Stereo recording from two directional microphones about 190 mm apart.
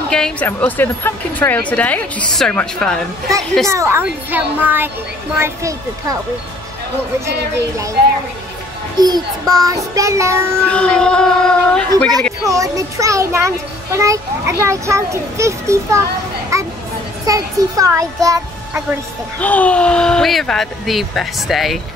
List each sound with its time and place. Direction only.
0.1 s speech: 5° left (ahead or behind)
3.6 s a child's voice: 15° right (ahead or behind)
7.2 s a child's voice: 15° right (ahead or behind)
9.0 s a child's voice: 20° right (ahead or behind)
10.6 s speech: 5° left (ahead or behind)
12.4 s a child's voice: 15° right (ahead or behind)
19.4 s speech: 10° left (ahead or behind)